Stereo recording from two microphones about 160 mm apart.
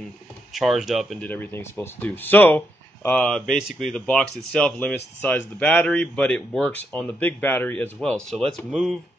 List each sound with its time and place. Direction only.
0.5 s speech: centre (ahead or behind)
1.2 s speech: 10° left (ahead or behind)